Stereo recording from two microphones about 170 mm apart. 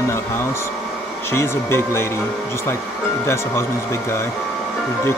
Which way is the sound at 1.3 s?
15° left (ahead or behind).